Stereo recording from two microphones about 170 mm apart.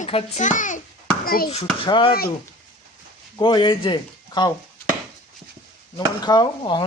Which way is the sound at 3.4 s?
30° left (ahead or behind).